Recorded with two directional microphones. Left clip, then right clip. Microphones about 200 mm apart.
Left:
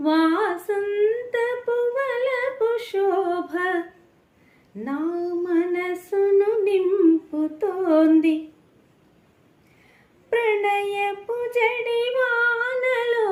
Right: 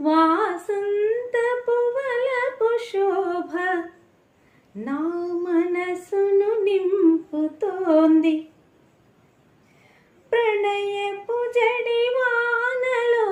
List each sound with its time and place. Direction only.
0.0 s music: 10° left (ahead or behind)
1.3 s humming: 10° left (ahead or behind)
4.8 s a sound: 5° left (ahead or behind)
7.3 s humming: 10° left (ahead or behind)
10.2 s female singing: 10° left (ahead or behind)